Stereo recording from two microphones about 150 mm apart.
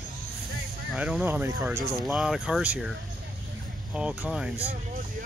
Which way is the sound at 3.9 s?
10° right (ahead or behind).